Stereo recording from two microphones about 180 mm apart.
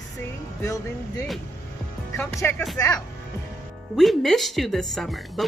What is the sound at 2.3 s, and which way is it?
Speech, 15° left (ahead or behind).